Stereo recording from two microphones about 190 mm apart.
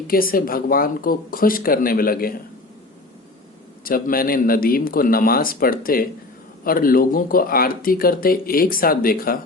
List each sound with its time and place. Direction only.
0.1 s speech: 50° left (ahead or behind)
3.8 s speech: 50° left (ahead or behind)